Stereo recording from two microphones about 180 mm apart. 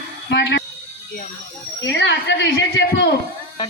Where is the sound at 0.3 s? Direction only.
75° left (ahead or behind).